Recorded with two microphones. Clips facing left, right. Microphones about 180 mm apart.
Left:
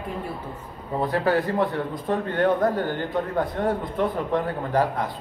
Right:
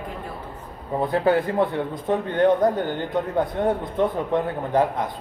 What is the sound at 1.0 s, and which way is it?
A man's voice, 25° right (ahead or behind).